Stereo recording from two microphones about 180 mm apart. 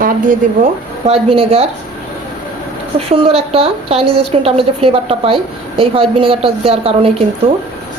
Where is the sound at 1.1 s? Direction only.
30° right (ahead or behind).